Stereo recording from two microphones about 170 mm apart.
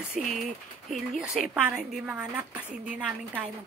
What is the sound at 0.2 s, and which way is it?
A woman's voice, centre (ahead or behind).